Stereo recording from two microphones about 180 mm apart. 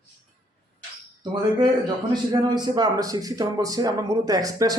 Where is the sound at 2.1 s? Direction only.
25° right (ahead or behind).